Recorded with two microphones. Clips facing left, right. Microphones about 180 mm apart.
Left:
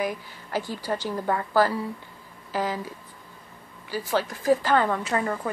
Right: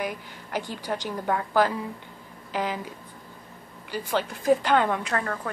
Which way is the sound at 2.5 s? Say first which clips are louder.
Left 1 dB; 15° right (ahead or behind).